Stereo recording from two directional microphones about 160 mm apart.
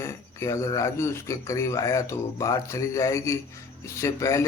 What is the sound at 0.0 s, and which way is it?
A man's voice, 20° left (ahead or behind).